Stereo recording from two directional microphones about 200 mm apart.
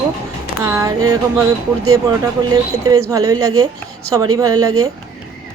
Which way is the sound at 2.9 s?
15° right (ahead or behind).